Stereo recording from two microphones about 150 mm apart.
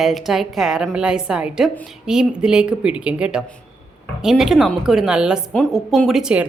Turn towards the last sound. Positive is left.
turn(degrees=-5)  # may be behind; listen again after turning